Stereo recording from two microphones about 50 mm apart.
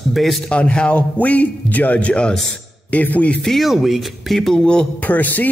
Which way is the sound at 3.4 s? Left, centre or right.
Centre.